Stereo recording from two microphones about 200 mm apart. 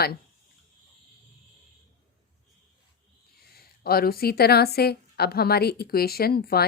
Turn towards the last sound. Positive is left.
turn(degrees=50)  # may be behind; listen again after turning